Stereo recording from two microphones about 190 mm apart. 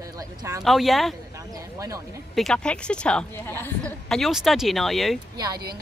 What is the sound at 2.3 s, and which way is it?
A woman's voice, 5° left (ahead or behind).